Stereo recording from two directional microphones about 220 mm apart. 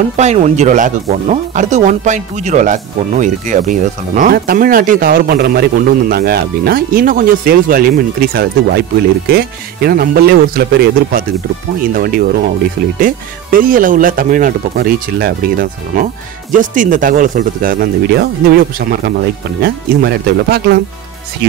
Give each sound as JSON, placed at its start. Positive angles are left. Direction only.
{"t": 0.2, "sound": "speech", "side_deg": -30}